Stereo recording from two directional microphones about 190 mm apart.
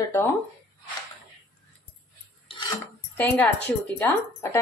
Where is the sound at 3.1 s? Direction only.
10° left (ahead or behind).